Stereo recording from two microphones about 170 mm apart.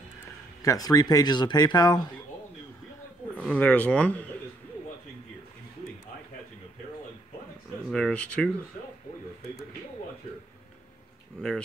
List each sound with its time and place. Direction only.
0.6 s speech: 20° left (ahead or behind)
3.3 s speech: 10° left (ahead or behind)
7.9 s speech: 5° left (ahead or behind)